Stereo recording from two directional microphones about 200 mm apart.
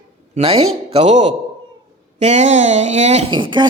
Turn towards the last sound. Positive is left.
turn(degrees=-25)  # may be behind; listen again after turning